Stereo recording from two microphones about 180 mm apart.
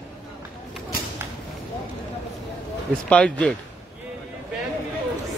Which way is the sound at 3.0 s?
5° left (ahead or behind).